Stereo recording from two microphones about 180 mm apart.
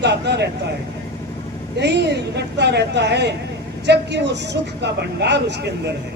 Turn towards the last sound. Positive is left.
turn(degrees=-70)  # may be behind; listen again after turning